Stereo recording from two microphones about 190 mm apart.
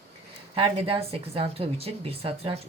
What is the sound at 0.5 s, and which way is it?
A woman's voice, 30° right (ahead or behind).